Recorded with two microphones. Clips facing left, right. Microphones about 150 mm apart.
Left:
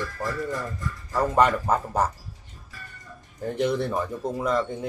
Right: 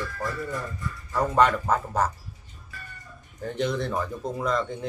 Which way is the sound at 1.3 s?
10° left (ahead or behind).